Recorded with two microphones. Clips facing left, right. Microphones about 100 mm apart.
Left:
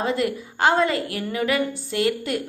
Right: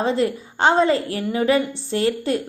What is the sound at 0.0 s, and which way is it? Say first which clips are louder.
A woman's voice: right 3 dB; 30° right (ahead or behind).